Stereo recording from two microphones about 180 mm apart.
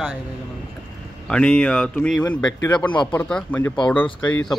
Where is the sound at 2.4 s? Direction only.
20° left (ahead or behind).